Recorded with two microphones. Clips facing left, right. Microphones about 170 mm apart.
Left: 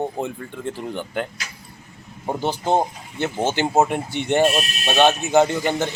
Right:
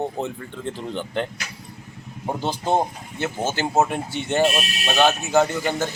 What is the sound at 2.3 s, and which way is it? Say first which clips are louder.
Speech: left 2 dB; 15° left (ahead or behind).